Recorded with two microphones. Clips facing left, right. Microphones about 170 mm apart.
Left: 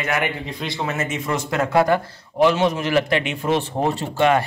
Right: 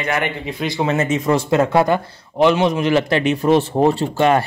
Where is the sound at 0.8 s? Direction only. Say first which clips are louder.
Right 7 dB; 30° right (ahead or behind).